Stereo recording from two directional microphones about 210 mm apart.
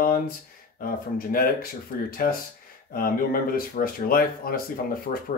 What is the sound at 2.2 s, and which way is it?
Speech, 45° left (ahead or behind).